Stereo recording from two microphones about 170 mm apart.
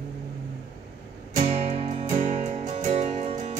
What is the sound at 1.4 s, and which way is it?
Music, 40° right (ahead or behind).